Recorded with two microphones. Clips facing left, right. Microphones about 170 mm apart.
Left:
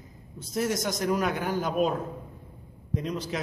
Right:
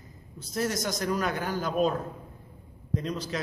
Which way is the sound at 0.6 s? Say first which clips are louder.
Left 2 dB; 20° left (ahead or behind).